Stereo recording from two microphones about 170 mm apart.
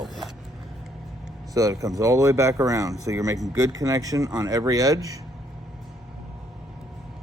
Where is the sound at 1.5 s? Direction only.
20° right (ahead or behind).